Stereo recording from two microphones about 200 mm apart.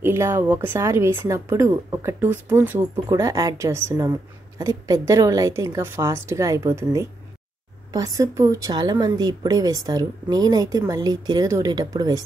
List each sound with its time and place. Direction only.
0.0 s a woman's voice: 10° right (ahead or behind)